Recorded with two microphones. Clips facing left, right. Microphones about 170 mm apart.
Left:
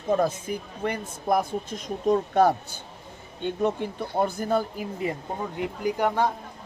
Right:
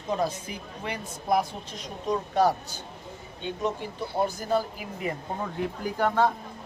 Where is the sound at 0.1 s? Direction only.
50° left (ahead or behind).